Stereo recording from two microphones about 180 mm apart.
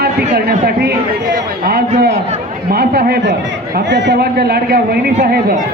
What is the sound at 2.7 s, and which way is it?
A man's voice, 60° right (ahead or behind).